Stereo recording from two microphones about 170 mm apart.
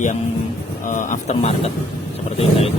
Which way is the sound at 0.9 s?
50° left (ahead or behind).